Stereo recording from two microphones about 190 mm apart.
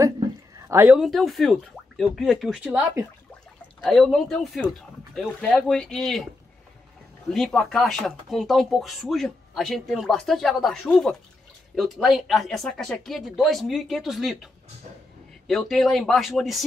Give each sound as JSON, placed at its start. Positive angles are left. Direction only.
{"t": 0.6, "sound": "speech", "side_deg": -15}
{"t": 7.2, "sound": "speech", "side_deg": 5}